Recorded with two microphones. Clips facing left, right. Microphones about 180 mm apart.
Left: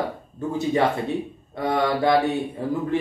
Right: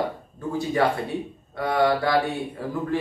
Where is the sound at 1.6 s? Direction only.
20° left (ahead or behind).